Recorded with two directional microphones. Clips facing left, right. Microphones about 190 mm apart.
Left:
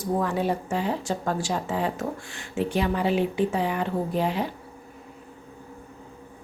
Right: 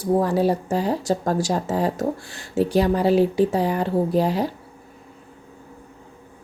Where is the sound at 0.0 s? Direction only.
35° right (ahead or behind).